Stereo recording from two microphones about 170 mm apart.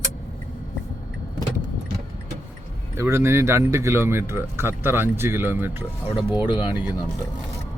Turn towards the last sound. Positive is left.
turn(degrees=-10)  # may be behind; listen again after turning